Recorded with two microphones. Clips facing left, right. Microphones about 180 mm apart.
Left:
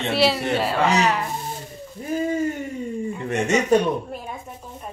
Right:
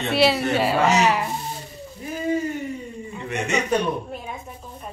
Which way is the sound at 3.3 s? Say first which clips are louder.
Left 4 dB; 45° left (ahead or behind).